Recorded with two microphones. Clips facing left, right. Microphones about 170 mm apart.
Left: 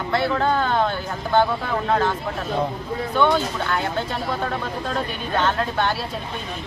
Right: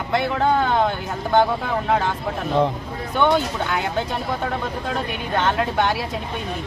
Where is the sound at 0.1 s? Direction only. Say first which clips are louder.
Right 1 dB; 15° right (ahead or behind).